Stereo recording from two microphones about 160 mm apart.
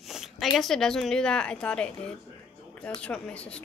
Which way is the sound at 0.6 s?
5° left (ahead or behind).